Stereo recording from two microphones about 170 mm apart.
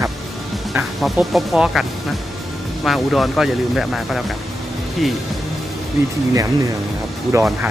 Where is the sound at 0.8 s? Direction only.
Centre (ahead or behind).